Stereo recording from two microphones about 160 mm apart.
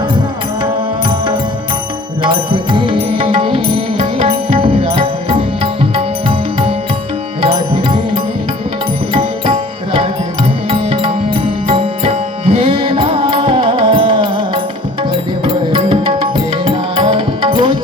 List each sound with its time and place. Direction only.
2.2 s music: 30° right (ahead or behind)